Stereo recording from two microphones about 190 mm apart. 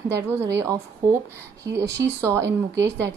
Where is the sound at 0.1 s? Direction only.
15° right (ahead or behind).